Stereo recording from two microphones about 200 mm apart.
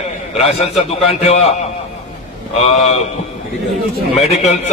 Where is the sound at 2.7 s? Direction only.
35° left (ahead or behind).